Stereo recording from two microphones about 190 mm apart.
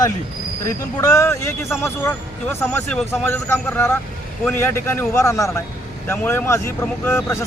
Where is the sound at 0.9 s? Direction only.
20° left (ahead or behind).